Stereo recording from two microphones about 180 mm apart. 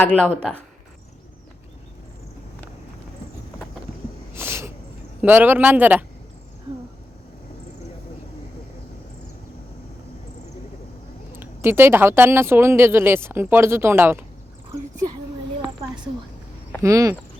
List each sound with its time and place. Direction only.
0.0 s speech: 5° left (ahead or behind)
4.4 s a sound: 15° right (ahead or behind)
5.2 s speech: 10° right (ahead or behind)
11.3 s speech: 10° right (ahead or behind)
16.8 s speech: 15° right (ahead or behind)